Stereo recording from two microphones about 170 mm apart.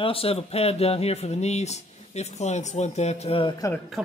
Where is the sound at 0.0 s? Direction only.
35° left (ahead or behind).